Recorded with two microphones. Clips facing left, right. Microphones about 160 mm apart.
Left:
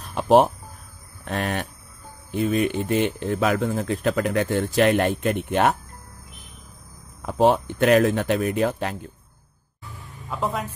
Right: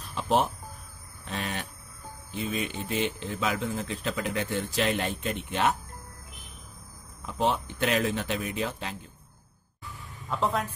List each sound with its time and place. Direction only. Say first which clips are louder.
0.0 s speech: left 9 dB; 60° left (ahead or behind)
7.2 s speech: left 9 dB; 55° left (ahead or behind)
10.3 s speech: left 1 dB; 5° left (ahead or behind)